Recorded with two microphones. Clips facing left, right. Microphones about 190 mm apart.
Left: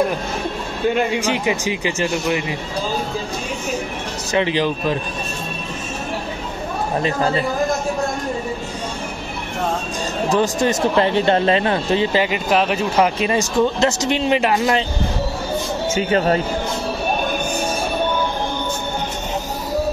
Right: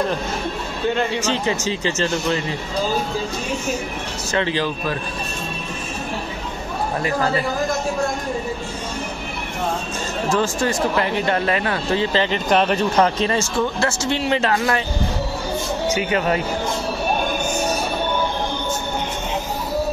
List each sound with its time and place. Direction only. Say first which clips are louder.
0.9 s a man's voice: left 2 dB; 15° left (ahead or behind)
4.3 s a man's voice: left 3 dB; 15° left (ahead or behind)
10.3 s speech: left 3 dB; 20° left (ahead or behind)
15.9 s speech: left 4 dB; 30° left (ahead or behind)